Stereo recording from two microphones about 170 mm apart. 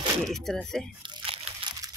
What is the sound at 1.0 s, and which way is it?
Crunch, 30° right (ahead or behind).